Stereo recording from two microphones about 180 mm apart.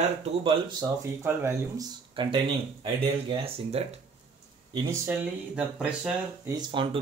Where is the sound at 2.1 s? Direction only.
30° right (ahead or behind).